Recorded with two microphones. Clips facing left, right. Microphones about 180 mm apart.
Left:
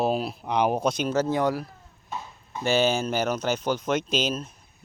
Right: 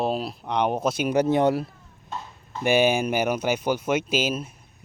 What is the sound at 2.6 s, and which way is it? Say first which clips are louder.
Speech: right 3 dB; 15° right (ahead or behind).